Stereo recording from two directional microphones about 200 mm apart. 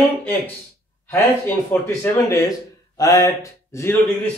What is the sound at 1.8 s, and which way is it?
Speech, 15° left (ahead or behind).